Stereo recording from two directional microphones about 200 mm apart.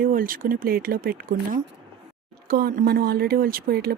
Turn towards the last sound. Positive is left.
turn(degrees=-50)  # may be behind; listen again after turning